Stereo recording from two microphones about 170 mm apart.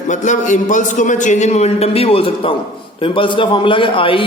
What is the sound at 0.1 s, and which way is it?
A man's voice, 45° left (ahead or behind).